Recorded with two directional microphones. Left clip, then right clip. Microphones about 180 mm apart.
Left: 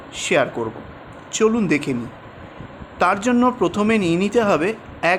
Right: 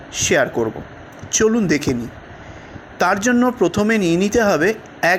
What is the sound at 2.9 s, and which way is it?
Speech, 15° right (ahead or behind).